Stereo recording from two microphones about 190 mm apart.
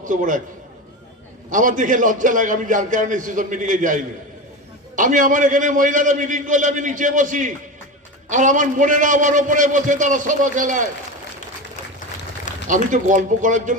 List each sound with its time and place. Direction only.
0.0 s a man's voice: 45° right (ahead or behind)
1.5 s a man's voice: 45° right (ahead or behind)
12.6 s a man's voice: 40° right (ahead or behind)